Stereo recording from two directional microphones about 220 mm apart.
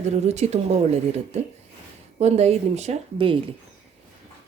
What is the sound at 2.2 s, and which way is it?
A woman's voice, 30° right (ahead or behind).